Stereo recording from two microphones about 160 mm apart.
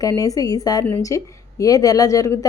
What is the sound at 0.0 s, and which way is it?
A woman's voice, 20° left (ahead or behind).